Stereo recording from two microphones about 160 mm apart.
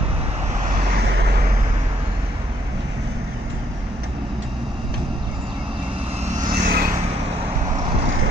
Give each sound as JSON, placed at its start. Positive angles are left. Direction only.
{"t": 0.8, "sound": "vehicle", "side_deg": -85}
{"t": 6.5, "sound": "vehicle", "side_deg": -65}